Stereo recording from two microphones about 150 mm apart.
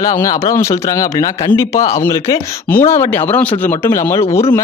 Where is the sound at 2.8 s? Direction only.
50° left (ahead or behind).